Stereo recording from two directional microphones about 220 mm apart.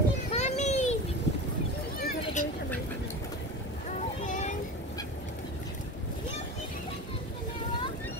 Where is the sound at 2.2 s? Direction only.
35° left (ahead or behind).